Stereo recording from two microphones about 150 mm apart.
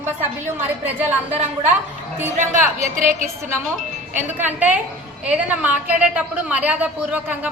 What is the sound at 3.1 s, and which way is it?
A woman's voice, 15° right (ahead or behind).